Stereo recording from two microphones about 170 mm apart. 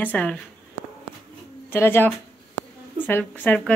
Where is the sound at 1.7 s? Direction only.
15° left (ahead or behind).